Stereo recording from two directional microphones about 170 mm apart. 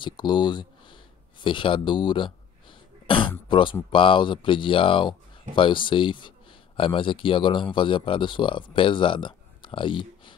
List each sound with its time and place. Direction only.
0.0 s a man's voice: 25° left (ahead or behind)